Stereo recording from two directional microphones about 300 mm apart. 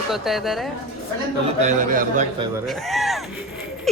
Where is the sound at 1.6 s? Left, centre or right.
Right.